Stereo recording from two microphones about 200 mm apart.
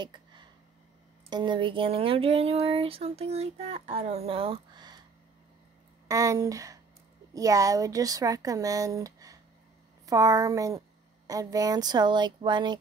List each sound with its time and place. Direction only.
0.0 s a sound: 25° right (ahead or behind)
1.3 s speech: 25° right (ahead or behind)
6.0 s speech: 15° right (ahead or behind)